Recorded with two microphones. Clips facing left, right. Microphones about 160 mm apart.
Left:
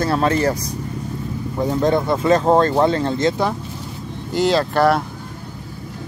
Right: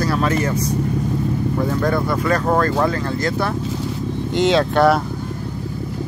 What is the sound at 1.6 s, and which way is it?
Speech, 20° left (ahead or behind).